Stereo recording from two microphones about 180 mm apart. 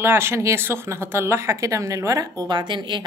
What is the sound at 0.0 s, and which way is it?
Speech, 15° right (ahead or behind).